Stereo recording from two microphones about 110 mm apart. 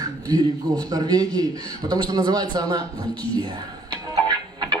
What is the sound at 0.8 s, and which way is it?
A man's voice, 35° right (ahead or behind).